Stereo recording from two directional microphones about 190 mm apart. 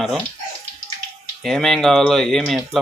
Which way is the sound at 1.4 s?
Centre (ahead or behind).